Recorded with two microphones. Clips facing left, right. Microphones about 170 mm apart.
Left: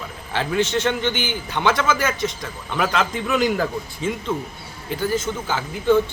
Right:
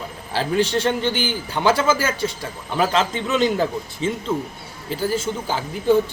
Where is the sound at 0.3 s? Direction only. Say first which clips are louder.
Right 1 dB; 35° right (ahead or behind).